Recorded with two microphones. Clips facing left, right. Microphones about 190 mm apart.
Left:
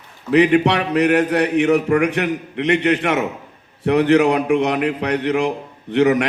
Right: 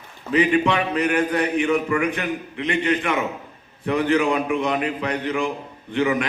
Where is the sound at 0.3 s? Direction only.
70° left (ahead or behind).